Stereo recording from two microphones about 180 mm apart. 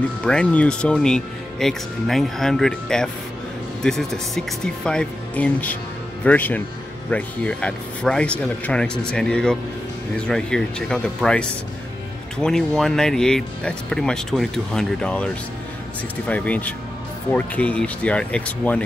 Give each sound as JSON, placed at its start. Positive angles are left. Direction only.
{"t": 0.2, "sound": "speech", "side_deg": 5}